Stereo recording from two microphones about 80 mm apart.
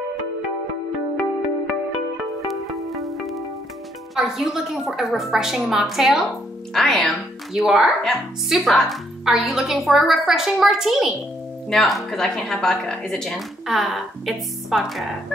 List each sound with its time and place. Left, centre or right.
2.4 s music: centre
4.1 s speech: centre